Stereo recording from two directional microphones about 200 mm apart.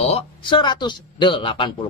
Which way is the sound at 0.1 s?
25° left (ahead or behind).